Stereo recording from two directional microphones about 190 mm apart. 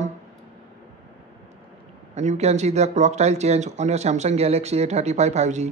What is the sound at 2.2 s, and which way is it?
Speech, 35° right (ahead or behind).